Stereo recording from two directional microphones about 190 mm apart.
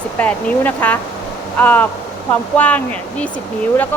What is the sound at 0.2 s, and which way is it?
Speech, 10° left (ahead or behind).